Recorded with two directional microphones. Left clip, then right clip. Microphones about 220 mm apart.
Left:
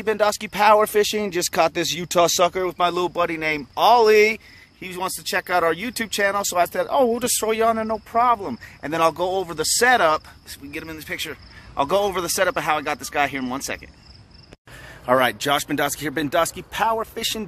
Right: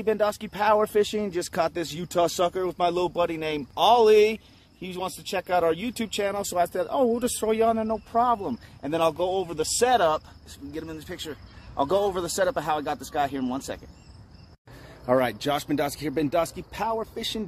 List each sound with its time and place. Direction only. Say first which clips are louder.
0.0 s speech: left 4 dB; 10° left (ahead or behind)
15.0 s speech: left 5 dB; centre (ahead or behind)